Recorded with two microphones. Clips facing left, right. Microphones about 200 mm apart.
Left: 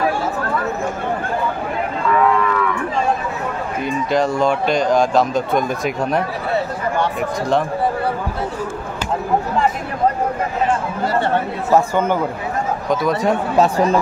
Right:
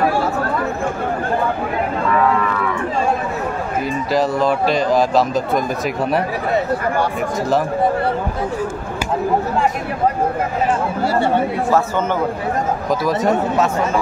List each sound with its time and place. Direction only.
3.8 s speech: 5° right (ahead or behind)
7.0 s speech: 5° right (ahead or behind)
11.7 s speech: 10° left (ahead or behind)
13.0 s speech: centre (ahead or behind)
13.6 s speech: 35° left (ahead or behind)